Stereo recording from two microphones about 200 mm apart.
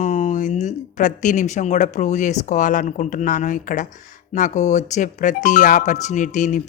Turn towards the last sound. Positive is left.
turn(degrees=40)  # may be behind; listen again after turning